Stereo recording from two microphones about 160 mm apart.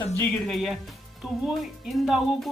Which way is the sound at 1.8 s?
Centre (ahead or behind).